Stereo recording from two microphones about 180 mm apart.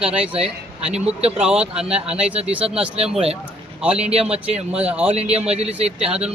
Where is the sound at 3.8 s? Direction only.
5° right (ahead or behind).